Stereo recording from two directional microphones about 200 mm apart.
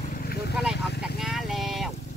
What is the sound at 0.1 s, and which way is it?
Vehicle, 50° left (ahead or behind).